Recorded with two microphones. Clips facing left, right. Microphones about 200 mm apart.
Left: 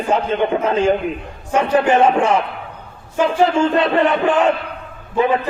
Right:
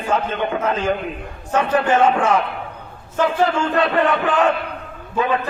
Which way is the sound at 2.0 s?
25° left (ahead or behind).